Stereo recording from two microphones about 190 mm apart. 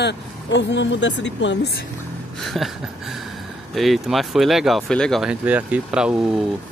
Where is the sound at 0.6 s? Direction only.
70° left (ahead or behind).